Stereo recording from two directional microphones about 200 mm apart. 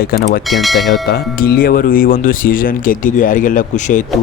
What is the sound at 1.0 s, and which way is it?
Speech, 50° left (ahead or behind).